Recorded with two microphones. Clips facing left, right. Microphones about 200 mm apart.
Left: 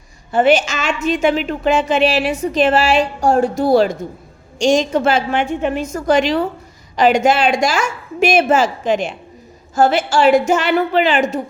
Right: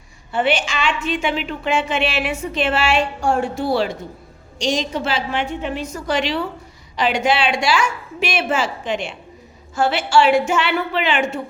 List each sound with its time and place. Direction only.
0.3 s a woman's voice: 40° left (ahead or behind)